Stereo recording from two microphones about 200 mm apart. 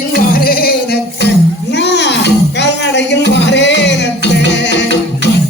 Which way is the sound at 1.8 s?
60° left (ahead or behind).